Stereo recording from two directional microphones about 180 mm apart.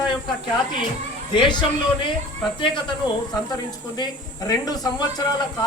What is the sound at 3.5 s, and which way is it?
Speech, 20° left (ahead or behind).